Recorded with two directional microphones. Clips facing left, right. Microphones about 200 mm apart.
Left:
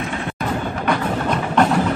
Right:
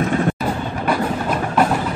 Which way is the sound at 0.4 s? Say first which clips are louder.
Even; 5° right (ahead or behind).